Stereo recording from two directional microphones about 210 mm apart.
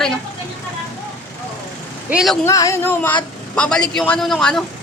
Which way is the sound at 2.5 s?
15° left (ahead or behind).